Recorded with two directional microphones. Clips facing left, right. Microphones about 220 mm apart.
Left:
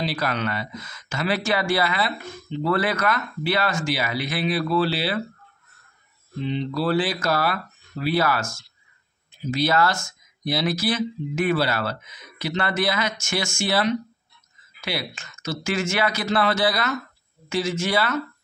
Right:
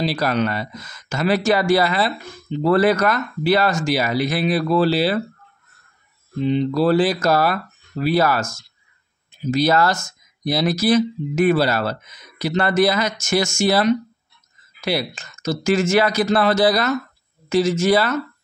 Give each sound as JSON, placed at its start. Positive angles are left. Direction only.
{"t": 0.0, "sound": "speech", "side_deg": -35}
{"t": 6.4, "sound": "speech", "side_deg": -45}